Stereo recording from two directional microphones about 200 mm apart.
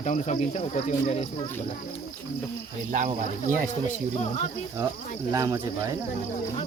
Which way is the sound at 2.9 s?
40° right (ahead or behind).